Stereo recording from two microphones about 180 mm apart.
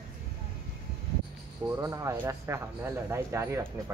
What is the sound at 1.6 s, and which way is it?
Speech, 15° right (ahead or behind).